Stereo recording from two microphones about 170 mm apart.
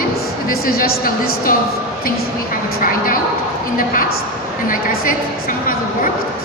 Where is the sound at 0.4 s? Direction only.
60° left (ahead or behind).